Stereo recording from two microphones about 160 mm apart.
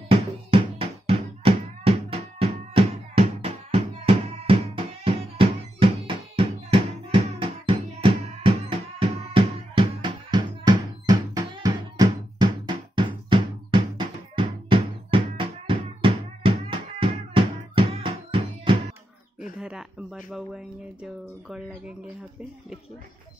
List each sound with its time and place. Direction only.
0.1 s music: 35° right (ahead or behind)
19.6 s speech: 5° right (ahead or behind)